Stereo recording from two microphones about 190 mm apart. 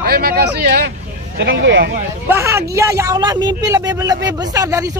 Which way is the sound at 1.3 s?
80° right.